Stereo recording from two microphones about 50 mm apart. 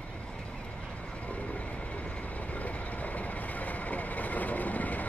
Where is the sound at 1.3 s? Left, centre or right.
Left.